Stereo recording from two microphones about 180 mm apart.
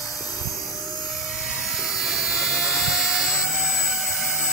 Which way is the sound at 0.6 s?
Centre (ahead or behind).